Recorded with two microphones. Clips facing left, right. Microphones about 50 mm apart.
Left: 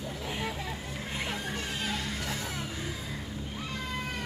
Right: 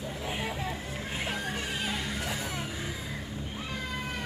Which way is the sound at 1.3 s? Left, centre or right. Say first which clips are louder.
Right 1 dB; centre.